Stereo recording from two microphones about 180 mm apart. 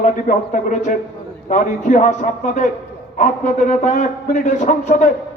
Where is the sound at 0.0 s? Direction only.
45° left (ahead or behind).